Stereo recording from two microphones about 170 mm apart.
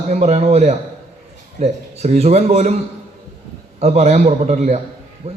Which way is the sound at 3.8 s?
40° right (ahead or behind).